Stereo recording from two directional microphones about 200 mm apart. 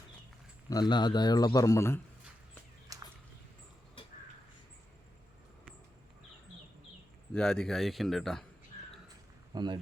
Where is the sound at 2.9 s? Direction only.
15° right (ahead or behind).